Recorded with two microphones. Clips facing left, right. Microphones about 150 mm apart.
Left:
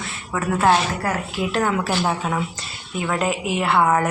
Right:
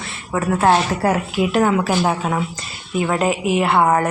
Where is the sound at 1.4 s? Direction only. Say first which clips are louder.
Right 5 dB; 10° right (ahead or behind).